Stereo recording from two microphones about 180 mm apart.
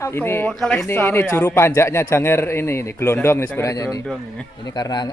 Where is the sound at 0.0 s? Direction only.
15° left (ahead or behind).